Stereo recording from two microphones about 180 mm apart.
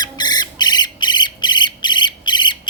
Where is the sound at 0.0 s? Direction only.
25° left (ahead or behind).